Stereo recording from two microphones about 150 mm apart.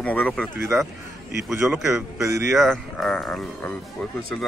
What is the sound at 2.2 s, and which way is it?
Speech, 20° right (ahead or behind).